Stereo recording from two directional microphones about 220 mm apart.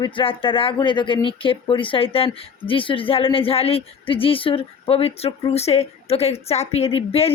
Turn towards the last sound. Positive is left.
turn(degrees=25)  # may be behind; listen again after turning